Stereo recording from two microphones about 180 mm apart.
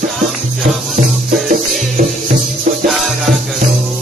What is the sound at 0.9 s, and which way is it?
Music, 50° right (ahead or behind).